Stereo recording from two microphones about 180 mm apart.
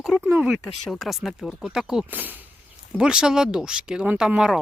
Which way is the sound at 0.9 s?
Centre (ahead or behind).